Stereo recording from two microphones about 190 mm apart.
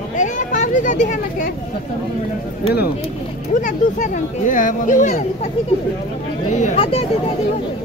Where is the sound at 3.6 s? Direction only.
40° left (ahead or behind).